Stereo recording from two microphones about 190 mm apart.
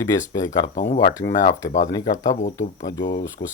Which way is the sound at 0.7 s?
40° left (ahead or behind).